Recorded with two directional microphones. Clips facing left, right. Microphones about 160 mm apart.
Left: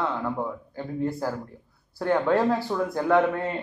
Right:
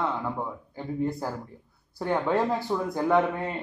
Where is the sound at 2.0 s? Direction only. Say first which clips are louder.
Left 3 dB; 15° right (ahead or behind).